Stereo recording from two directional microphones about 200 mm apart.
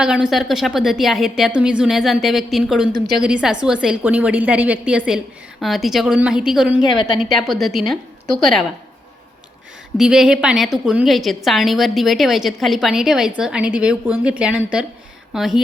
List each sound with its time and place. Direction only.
0.0 s a woman's voice: 5° right (ahead or behind)
6.8 s a woman's voice: 20° left (ahead or behind)
7.2 s a woman's voice: centre (ahead or behind)
10.0 s a woman's voice: 5° right (ahead or behind)